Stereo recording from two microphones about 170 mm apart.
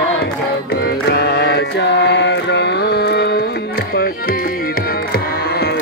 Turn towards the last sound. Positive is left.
turn(degrees=70)  # may be behind; listen again after turning